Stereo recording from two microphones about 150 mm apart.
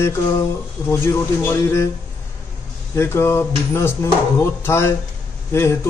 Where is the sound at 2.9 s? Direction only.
15° left (ahead or behind).